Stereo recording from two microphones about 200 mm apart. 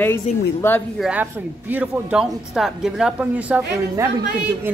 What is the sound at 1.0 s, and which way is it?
A woman's voice, 5° right (ahead or behind).